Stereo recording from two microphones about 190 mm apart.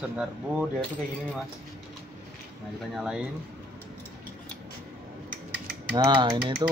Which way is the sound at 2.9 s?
5° right (ahead or behind).